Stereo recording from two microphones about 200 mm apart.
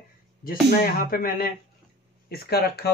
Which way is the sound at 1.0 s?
45° left (ahead or behind).